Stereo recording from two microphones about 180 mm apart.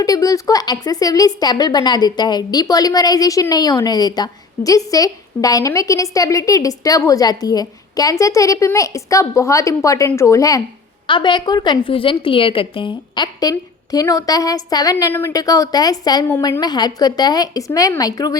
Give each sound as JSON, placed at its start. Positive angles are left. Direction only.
{"t": 0.0, "sound": "a woman's voice", "side_deg": 20}